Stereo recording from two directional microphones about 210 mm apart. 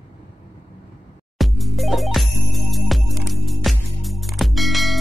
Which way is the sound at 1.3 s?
Centre (ahead or behind).